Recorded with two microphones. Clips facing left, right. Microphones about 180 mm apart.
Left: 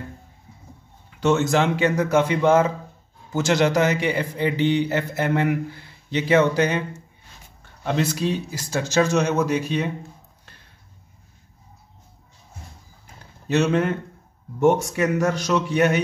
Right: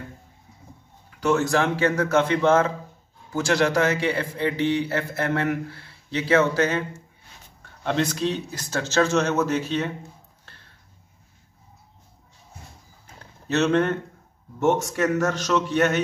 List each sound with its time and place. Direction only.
1.2 s a man's voice: 25° left (ahead or behind)
7.8 s a man's voice: 5° left (ahead or behind)
13.5 s a man's voice: 10° left (ahead or behind)